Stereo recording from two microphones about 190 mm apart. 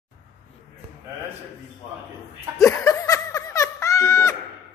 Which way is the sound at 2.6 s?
15° left (ahead or behind).